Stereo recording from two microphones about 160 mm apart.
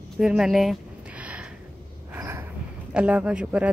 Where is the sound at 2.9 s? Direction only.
10° right (ahead or behind).